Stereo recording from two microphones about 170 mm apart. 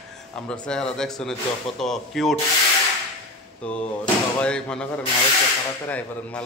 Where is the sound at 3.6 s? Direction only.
5° left (ahead or behind).